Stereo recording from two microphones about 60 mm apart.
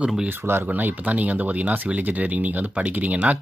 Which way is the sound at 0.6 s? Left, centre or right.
Right.